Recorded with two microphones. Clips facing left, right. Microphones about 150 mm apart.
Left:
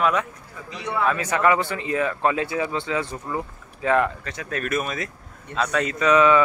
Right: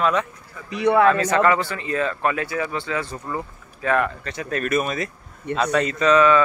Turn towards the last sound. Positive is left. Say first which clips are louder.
# right 1 dB
turn(degrees=15)  # may be behind; listen again after turning